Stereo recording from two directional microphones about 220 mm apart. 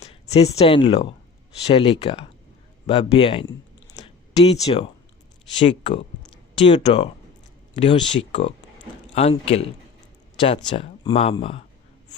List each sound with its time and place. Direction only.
0.0 s speech: 30° left (ahead or behind)
4.6 s speech: 25° left (ahead or behind)